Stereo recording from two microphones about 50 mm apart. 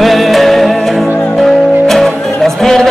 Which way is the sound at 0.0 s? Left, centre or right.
Centre.